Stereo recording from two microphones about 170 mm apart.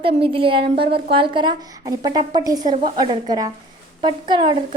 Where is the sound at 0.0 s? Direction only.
30° right (ahead or behind).